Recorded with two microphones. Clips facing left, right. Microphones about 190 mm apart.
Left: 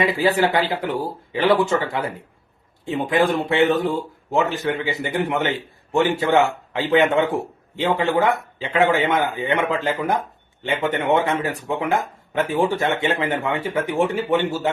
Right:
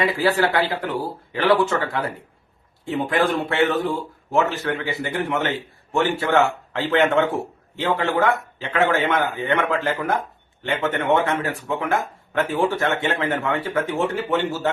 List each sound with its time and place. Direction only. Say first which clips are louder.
0.0 s speech: left 1 dB; 15° left (ahead or behind)